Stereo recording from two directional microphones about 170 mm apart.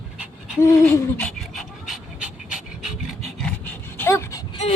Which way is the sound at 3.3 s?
5° left (ahead or behind).